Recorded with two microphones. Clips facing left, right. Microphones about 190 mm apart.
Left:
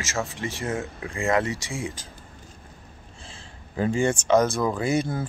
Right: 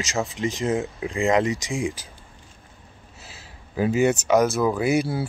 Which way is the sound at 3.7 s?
5° right (ahead or behind).